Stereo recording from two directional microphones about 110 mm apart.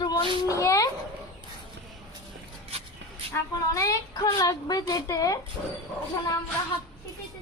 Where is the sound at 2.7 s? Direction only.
65° right (ahead or behind).